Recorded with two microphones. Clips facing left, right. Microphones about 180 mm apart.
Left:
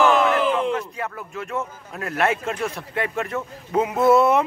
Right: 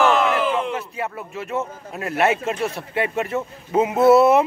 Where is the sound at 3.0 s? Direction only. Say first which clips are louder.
Right 3 dB; 5° right (ahead or behind).